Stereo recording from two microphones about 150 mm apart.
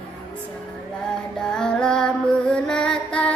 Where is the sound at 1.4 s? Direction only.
5° left (ahead or behind).